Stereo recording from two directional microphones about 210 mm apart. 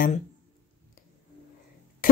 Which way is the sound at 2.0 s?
40° left (ahead or behind).